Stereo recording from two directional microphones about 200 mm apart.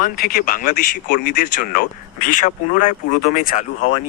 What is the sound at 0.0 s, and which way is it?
Speech, 45° left (ahead or behind).